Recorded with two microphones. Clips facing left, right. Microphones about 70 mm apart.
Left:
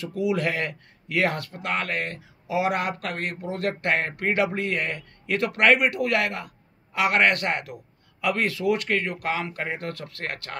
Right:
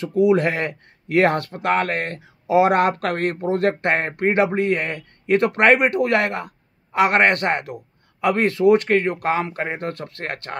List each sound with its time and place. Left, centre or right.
0.0 s speech: right